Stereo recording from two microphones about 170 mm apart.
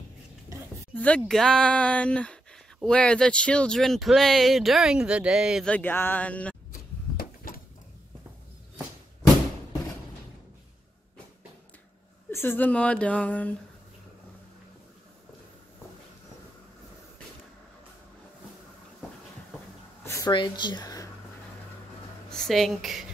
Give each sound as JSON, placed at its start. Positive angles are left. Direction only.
{"t": 0.9, "sound": "speech", "side_deg": 5}
{"t": 5.7, "sound": "speech", "side_deg": 10}
{"t": 6.7, "sound": "a sound", "side_deg": 60}
{"t": 12.3, "sound": "speech", "side_deg": 15}
{"t": 20.1, "sound": "a sound", "side_deg": 15}
{"t": 20.3, "sound": "speech", "side_deg": 25}
{"t": 22.3, "sound": "a woman's voice", "side_deg": 0}